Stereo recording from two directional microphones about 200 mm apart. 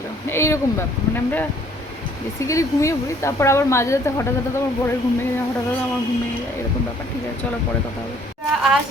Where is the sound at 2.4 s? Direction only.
15° left (ahead or behind).